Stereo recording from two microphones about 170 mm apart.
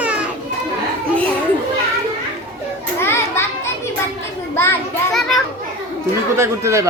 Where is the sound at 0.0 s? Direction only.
5° right (ahead or behind).